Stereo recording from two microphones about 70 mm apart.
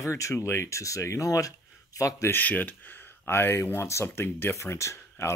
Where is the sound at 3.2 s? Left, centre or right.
Left.